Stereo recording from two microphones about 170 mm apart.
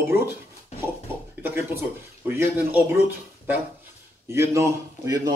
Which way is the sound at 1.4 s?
15° right (ahead or behind).